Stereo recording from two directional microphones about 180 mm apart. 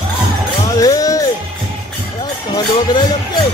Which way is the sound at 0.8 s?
20° left (ahead or behind).